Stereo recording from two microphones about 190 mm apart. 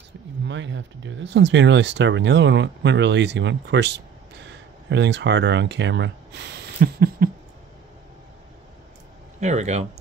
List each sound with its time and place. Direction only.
0.5 s speech: 75° right (ahead or behind); by 7.2 s 55° right (ahead or behind)
9.4 s speech: 35° right (ahead or behind)